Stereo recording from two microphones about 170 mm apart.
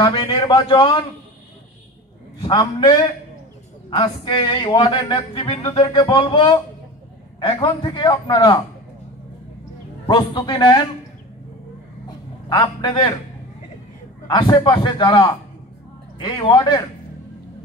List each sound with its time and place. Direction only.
0.0 s speech: 30° left (ahead or behind)
2.4 s speech: 25° left (ahead or behind)
10.0 s speech: 25° left (ahead or behind)
12.4 s speech: 25° left (ahead or behind)
14.2 s speech: 25° left (ahead or behind)